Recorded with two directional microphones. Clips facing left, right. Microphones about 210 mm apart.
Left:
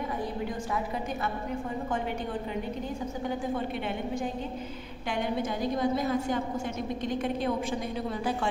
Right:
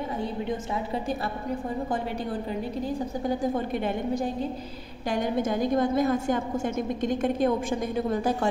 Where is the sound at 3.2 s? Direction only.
40° right (ahead or behind).